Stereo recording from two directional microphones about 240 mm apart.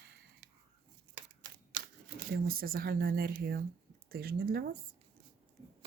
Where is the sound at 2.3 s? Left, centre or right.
Right.